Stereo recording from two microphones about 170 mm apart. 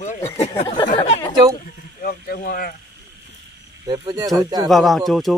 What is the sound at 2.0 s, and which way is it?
Speech, 60° left (ahead or behind).